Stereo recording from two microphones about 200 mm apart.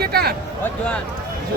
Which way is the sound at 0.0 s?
50° right (ahead or behind).